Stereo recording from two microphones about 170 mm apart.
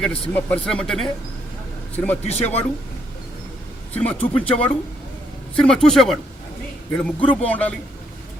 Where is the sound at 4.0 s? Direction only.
10° left (ahead or behind).